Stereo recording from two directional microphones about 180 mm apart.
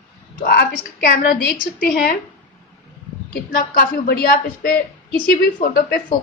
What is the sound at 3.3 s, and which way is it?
A woman's voice, 50° left (ahead or behind).